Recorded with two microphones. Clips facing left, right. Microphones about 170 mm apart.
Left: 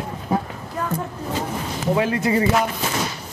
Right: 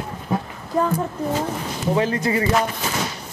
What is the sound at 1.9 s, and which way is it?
Speech, 10° left (ahead or behind).